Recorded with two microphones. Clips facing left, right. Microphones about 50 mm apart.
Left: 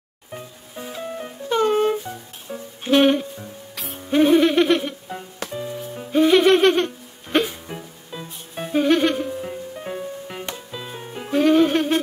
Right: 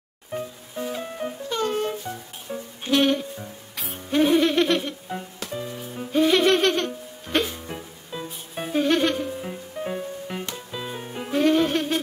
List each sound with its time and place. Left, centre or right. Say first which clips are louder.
0.3 s music: right 4 dB; centre
1.5 s music: left 8 dB; left
2.0 s music: even; centre
2.9 s music: left 4 dB; centre
3.3 s music: left 1 dB; centre